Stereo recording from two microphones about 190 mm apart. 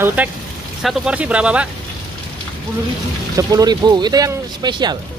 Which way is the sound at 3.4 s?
20° right (ahead or behind).